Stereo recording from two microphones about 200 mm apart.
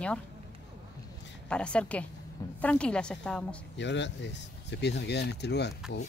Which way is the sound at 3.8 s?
65° left (ahead or behind).